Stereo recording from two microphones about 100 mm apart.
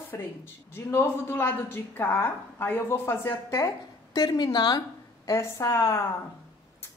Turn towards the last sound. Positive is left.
turn(degrees=30)  # may be behind; listen again after turning